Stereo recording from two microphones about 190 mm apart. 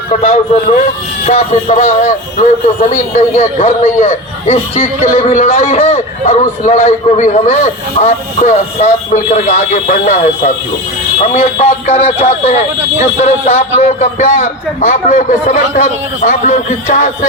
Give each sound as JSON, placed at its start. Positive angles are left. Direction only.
{"t": 0.2, "sound": "a man's voice", "side_deg": 30}